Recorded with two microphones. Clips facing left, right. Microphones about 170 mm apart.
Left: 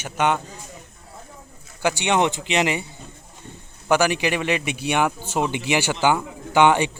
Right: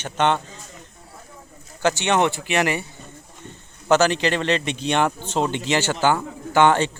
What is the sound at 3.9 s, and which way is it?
Speech, 10° left (ahead or behind).